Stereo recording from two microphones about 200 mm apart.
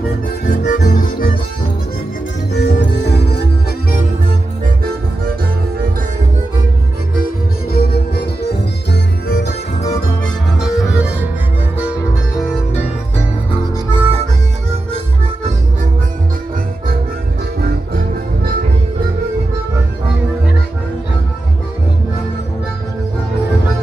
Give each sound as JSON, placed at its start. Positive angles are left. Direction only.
{"t": 0.5, "sound": "music", "side_deg": 40}
{"t": 2.5, "sound": "music", "side_deg": 55}
{"t": 7.7, "sound": "music", "side_deg": 55}
{"t": 10.6, "sound": "music", "side_deg": -5}
{"t": 13.9, "sound": "harmonica", "side_deg": -30}